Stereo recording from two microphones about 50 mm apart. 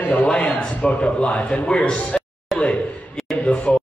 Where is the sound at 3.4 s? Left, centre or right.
Left.